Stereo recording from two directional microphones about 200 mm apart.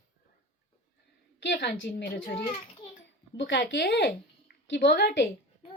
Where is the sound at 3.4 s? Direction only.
60° left (ahead or behind).